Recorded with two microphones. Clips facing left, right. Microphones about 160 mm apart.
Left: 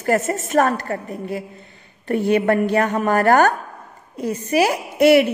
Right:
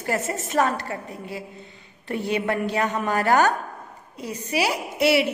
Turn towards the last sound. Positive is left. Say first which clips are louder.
# left 7 dB
turn(degrees=50)  # may be behind; listen again after turning